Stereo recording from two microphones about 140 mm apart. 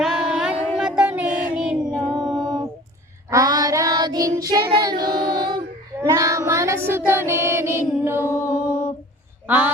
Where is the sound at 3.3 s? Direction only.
25° right (ahead or behind).